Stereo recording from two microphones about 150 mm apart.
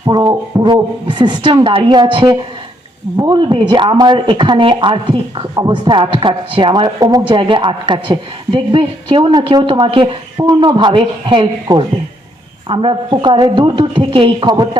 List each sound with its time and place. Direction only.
0.0 s a woman's voice: 25° right (ahead or behind)
10.3 s speech: 25° right (ahead or behind)